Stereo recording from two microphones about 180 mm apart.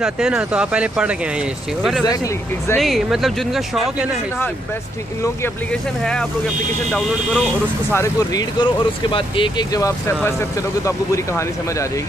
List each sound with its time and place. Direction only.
0.0 s speech: 5° right (ahead or behind)
2.0 s speech: 20° left (ahead or behind)
2.8 s speech: centre (ahead or behind)
5.2 s speech: 10° left (ahead or behind)
7.9 s speech: 20° left (ahead or behind)